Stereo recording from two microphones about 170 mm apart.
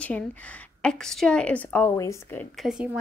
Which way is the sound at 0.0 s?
10° left (ahead or behind).